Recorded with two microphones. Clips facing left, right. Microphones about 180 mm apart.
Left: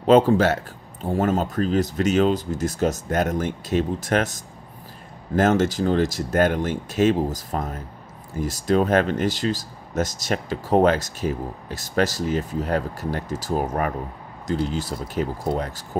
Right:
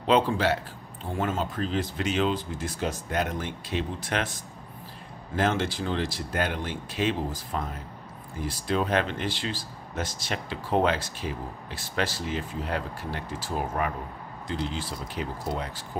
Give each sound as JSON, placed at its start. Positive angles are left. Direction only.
{"t": 0.0, "sound": "speech", "side_deg": 45}